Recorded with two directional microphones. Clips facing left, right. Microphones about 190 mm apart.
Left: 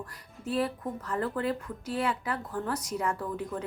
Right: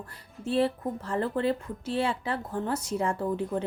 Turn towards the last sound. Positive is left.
turn(degrees=-25)  # may be behind; listen again after turning